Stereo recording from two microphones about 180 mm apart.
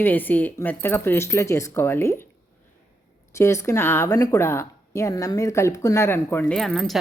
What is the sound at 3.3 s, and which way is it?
Speech, 15° left (ahead or behind).